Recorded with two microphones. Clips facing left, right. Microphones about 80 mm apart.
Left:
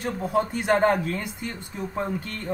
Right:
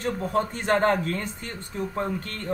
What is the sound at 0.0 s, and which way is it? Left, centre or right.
Speech, centre.